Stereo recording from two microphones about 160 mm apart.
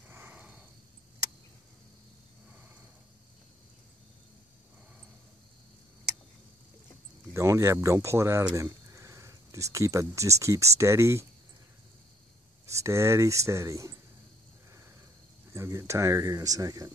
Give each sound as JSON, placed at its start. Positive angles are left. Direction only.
{"t": 0.1, "sound": "a sound", "side_deg": -10}
{"t": 7.3, "sound": "speech", "side_deg": -20}
{"t": 12.6, "sound": "speech", "side_deg": -20}
{"t": 15.5, "sound": "speech", "side_deg": -20}